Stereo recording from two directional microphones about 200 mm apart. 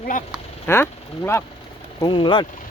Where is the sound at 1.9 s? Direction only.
25° left (ahead or behind).